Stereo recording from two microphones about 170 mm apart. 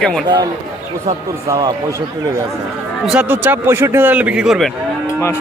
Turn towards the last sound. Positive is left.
turn(degrees=-5)  # may be behind; listen again after turning